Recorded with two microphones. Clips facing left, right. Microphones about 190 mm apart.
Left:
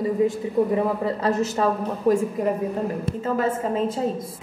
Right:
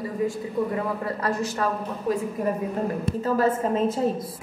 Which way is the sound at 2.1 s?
55° left (ahead or behind).